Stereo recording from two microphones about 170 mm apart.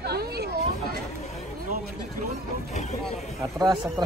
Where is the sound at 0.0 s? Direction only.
70° right (ahead or behind).